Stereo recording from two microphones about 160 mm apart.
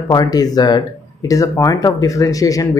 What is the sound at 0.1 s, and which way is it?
Speech, 25° left (ahead or behind).